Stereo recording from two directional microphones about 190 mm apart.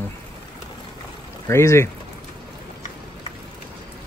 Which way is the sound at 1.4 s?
15° left (ahead or behind).